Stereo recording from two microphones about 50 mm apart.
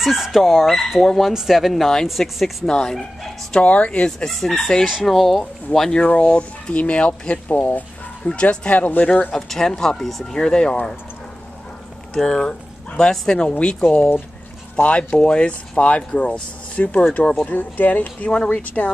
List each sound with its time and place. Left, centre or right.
0.0 s speech: centre
2.7 s speech: centre
3.6 s speech: left
4.2 s speech: centre
5.8 s speech: centre; by 8.3 s left
8.3 s speech: left
9.3 s speech: centre
10.3 s speech: centre
12.1 s speech: centre
13.4 s speech: centre
14.8 s speech: left
17.5 s speech: left
18.3 s speech: centre